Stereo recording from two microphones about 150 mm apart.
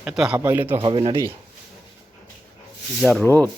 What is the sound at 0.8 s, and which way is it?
Speech, 40° right (ahead or behind).